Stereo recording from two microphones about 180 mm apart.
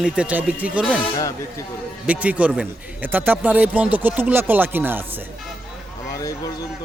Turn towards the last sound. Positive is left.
turn(degrees=20)  # may be behind; listen again after turning